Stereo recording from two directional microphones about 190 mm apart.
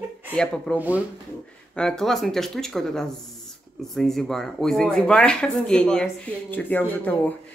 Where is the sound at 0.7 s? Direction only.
10° right (ahead or behind).